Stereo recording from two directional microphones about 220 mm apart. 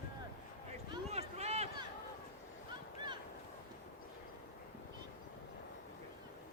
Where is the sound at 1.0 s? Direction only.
30° right (ahead or behind).